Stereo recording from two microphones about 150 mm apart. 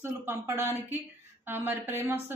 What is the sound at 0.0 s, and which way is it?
A woman's voice, 15° right (ahead or behind).